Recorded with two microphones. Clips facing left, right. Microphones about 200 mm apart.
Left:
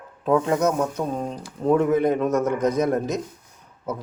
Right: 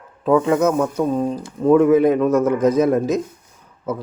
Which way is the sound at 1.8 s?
5° right (ahead or behind).